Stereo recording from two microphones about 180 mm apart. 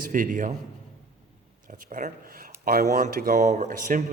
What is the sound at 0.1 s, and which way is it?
Speech, 45° right (ahead or behind).